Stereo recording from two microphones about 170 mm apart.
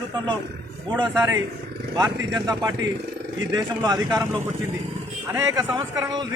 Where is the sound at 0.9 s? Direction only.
25° right (ahead or behind).